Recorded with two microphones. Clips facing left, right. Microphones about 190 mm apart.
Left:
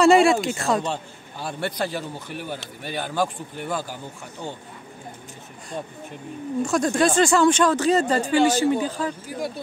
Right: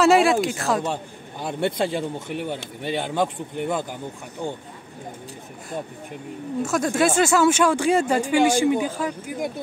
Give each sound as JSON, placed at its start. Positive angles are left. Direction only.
{"t": 0.0, "sound": "speech", "side_deg": 0}
{"t": 0.8, "sound": "a man's voice", "side_deg": -15}
{"t": 6.6, "sound": "speech", "side_deg": -5}